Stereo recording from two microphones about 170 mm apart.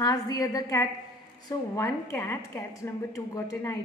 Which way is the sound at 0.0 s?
20° left (ahead or behind).